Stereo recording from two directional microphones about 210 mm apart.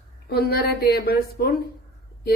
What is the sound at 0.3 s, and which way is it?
A woman's voice, 50° left (ahead or behind).